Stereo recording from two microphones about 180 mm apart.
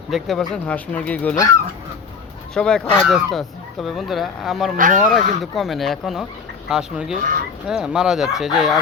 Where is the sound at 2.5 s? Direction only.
5° left (ahead or behind).